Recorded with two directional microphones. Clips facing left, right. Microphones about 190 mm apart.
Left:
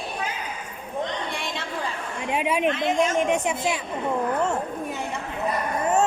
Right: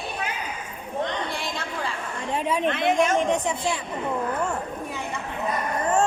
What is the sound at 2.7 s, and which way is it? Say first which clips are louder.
Speech: right 3 dB; 60° right (ahead or behind).